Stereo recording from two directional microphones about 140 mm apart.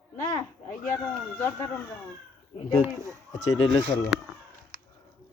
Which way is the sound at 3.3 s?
45° left (ahead or behind).